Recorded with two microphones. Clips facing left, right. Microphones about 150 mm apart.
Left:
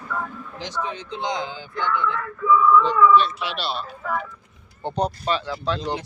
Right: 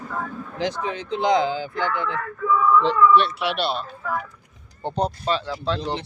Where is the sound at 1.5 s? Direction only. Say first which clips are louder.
Right 1 dB; 90° right.